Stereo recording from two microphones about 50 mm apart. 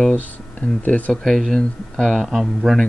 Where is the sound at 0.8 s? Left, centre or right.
Left.